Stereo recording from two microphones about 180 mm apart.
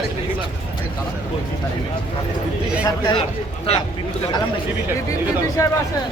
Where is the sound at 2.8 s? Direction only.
25° left (ahead or behind).